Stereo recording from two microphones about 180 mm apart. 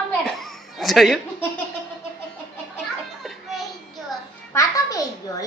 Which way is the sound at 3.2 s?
Centre (ahead or behind).